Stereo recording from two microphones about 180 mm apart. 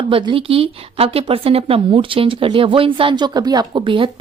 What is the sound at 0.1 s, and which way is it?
A woman's voice, 30° right (ahead or behind).